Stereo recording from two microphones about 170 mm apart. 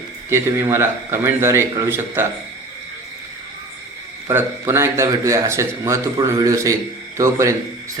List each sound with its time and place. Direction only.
0.3 s a man's voice: 15° right (ahead or behind)
4.3 s a man's voice: 15° right (ahead or behind)